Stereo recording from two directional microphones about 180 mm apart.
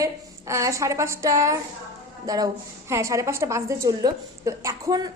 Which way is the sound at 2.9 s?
15° right (ahead or behind).